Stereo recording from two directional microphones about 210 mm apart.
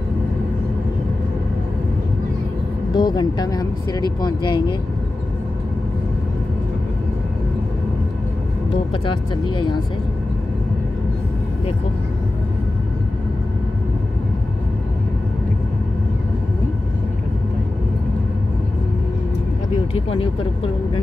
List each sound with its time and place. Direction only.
2.9 s speech: 20° left (ahead or behind)
8.9 s speech: 25° left (ahead or behind)
19.9 s speech: 25° left (ahead or behind)